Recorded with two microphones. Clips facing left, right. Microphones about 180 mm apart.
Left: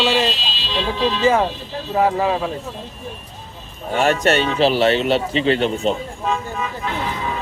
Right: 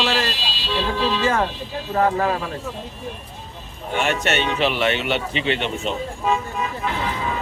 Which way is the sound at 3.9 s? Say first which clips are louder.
Left 5 dB; 35° left (ahead or behind).